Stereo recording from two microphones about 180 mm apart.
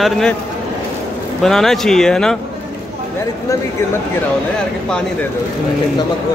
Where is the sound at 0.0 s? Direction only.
5° left (ahead or behind).